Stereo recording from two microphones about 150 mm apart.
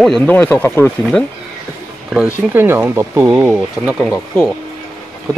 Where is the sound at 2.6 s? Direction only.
15° right (ahead or behind).